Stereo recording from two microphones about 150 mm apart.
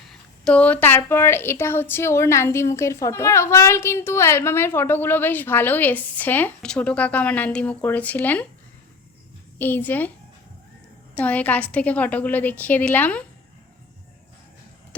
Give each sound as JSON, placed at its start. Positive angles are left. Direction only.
{"t": 0.1, "sound": "a woman's voice", "side_deg": 5}
{"t": 9.6, "sound": "a woman's voice", "side_deg": 10}
{"t": 11.1, "sound": "a woman's voice", "side_deg": 10}